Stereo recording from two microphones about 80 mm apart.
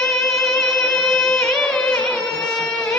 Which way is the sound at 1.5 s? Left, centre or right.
Centre.